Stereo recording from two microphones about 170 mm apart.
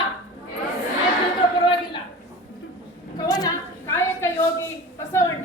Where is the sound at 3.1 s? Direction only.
20° left (ahead or behind).